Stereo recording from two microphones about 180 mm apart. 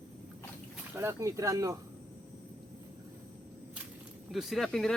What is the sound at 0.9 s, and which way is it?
Speech, 15° right (ahead or behind).